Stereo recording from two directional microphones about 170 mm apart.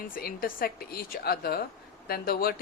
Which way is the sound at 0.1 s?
60° left (ahead or behind).